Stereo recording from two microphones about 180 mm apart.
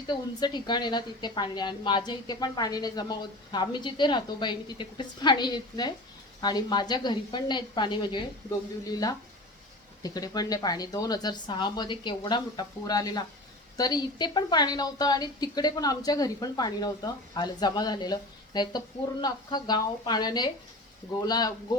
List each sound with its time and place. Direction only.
0.3 s a woman's voice: 25° left (ahead or behind)